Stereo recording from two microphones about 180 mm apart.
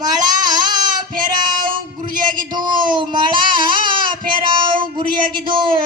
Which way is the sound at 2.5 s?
25° right (ahead or behind).